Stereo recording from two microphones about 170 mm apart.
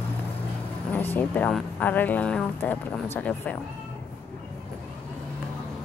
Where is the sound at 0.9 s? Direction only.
10° left (ahead or behind).